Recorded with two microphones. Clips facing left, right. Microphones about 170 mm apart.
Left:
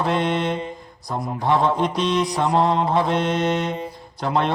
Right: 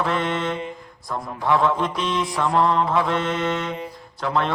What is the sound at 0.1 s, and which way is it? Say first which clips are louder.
Mantra: left 2 dB; 20° left (ahead or behind).